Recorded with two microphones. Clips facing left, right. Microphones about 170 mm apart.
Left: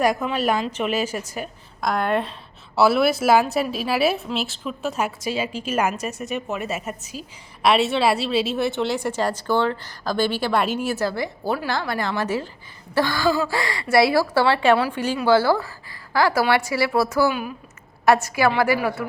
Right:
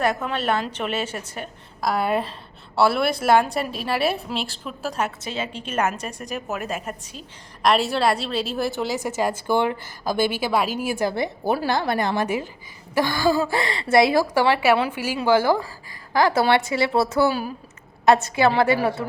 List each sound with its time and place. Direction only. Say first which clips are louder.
0.0 s a woman's voice: left 2 dB; 15° left (ahead or behind); by 10.7 s 5° right (ahead or behind)
10.8 s a woman's voice: right 1 dB; 15° right (ahead or behind)